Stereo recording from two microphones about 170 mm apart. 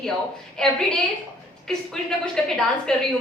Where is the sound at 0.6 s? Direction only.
5° left (ahead or behind).